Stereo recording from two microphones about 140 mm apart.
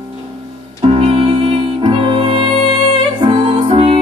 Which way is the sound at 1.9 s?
40° right (ahead or behind).